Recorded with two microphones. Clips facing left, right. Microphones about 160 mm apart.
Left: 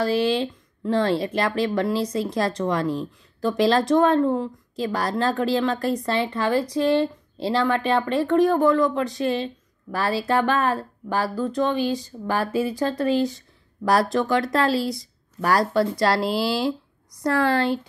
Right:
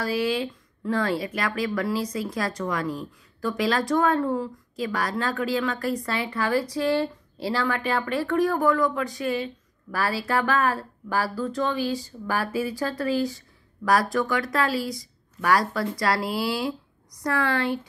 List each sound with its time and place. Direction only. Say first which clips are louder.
0.0 s speech: left 4 dB; 25° left (ahead or behind)